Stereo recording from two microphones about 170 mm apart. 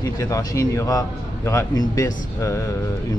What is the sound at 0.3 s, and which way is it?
Speech, 20° left (ahead or behind).